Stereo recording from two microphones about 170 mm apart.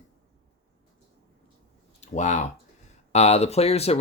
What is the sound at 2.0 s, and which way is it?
Speech, 45° left (ahead or behind).